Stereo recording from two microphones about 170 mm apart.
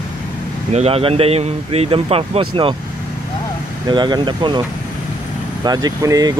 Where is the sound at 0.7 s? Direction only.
35° right (ahead or behind).